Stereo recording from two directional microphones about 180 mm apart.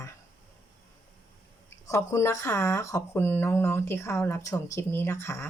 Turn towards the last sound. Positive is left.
turn(degrees=15)  # may be behind; listen again after turning